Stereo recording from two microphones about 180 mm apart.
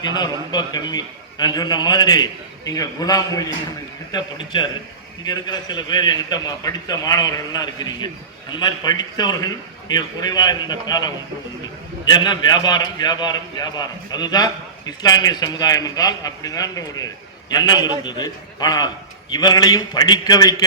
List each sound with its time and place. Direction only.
0.0 s a man's voice: 20° left (ahead or behind)